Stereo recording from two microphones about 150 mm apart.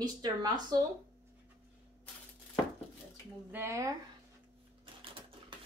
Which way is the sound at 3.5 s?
20° right (ahead or behind).